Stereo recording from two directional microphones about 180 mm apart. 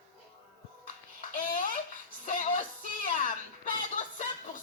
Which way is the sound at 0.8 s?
50° left (ahead or behind).